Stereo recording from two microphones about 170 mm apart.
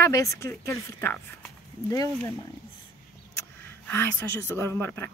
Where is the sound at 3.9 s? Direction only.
10° left (ahead or behind).